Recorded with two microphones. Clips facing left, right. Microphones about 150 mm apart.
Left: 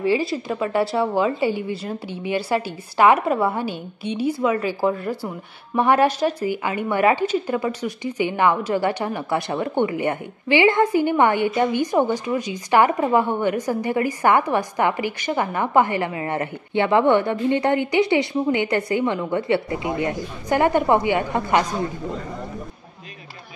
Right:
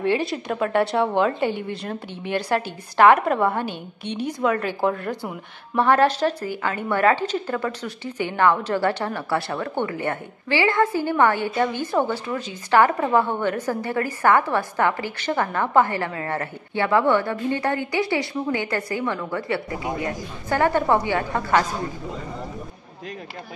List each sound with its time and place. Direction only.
0.0 s a woman's voice: 5° left (ahead or behind)